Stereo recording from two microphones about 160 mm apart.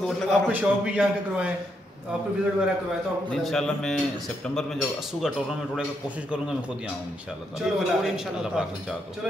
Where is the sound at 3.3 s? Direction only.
Centre (ahead or behind).